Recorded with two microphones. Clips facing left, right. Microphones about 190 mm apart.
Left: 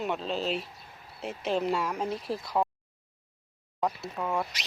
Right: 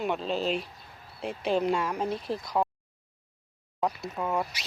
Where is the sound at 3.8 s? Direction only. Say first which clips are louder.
Right 1 dB; 5° right (ahead or behind).